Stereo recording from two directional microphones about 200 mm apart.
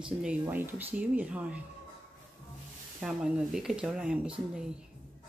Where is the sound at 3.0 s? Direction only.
5° right (ahead or behind).